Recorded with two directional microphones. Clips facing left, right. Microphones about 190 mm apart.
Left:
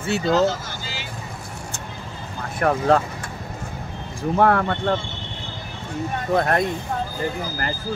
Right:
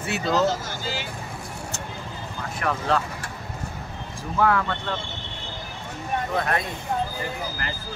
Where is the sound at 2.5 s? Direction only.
50° left (ahead or behind).